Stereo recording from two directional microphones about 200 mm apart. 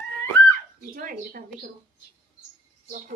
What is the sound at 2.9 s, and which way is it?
Speech, 40° right (ahead or behind).